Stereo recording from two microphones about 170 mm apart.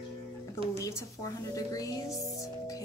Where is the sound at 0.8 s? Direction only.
20° left (ahead or behind).